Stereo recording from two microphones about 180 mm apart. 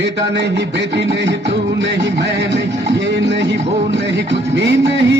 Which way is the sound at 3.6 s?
35° right (ahead or behind).